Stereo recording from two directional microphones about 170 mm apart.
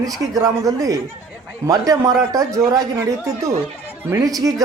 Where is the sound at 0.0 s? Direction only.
20° right (ahead or behind).